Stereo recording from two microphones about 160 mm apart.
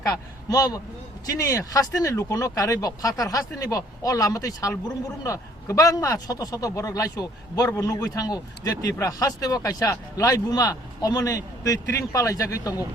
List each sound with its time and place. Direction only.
0.0 s speech: 20° left (ahead or behind)